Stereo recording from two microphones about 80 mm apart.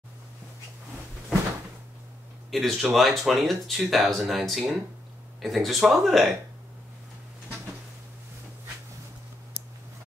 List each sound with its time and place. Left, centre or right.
2.5 s speech: centre